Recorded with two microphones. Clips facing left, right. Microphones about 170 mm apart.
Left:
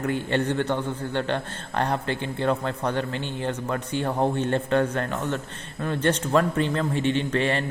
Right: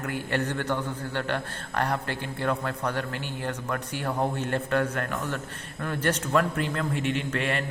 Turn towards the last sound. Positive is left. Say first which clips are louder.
# left 4 dB
turn(degrees=30)  # may be behind; listen again after turning